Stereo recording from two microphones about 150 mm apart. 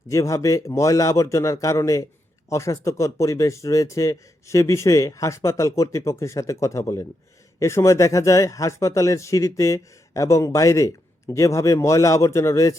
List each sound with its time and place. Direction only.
0.1 s a man's voice: 20° left (ahead or behind)